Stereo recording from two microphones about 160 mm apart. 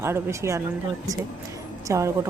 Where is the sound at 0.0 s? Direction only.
15° right (ahead or behind).